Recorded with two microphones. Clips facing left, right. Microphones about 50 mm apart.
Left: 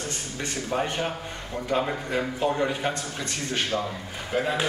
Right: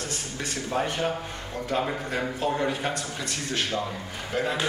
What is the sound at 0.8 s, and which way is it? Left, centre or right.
A man's voice, centre.